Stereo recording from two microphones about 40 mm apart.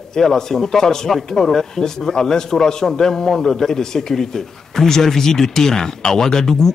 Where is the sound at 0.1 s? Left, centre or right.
Centre.